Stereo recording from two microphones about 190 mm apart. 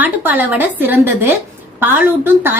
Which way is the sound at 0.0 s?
10° right (ahead or behind).